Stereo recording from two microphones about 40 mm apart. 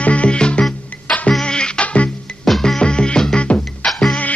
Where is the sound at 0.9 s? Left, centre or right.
Left.